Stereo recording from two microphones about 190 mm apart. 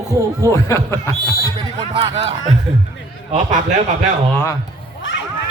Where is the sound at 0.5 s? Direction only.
15° left (ahead or behind).